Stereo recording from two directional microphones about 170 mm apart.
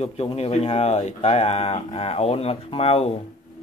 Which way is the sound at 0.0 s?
35° left (ahead or behind).